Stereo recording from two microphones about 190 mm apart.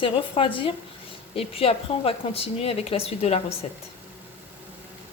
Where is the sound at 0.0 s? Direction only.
25° left (ahead or behind).